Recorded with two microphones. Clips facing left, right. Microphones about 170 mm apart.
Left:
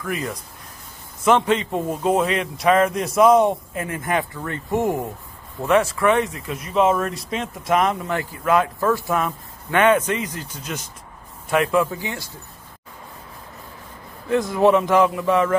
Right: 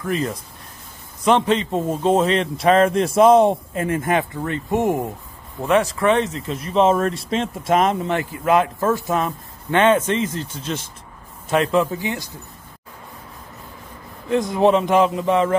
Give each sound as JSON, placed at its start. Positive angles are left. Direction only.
{"t": 0.0, "sound": "speech", "side_deg": -25}
{"t": 14.3, "sound": "speech", "side_deg": -20}